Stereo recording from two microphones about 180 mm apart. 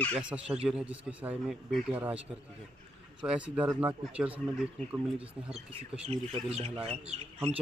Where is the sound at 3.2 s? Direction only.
5° right (ahead or behind).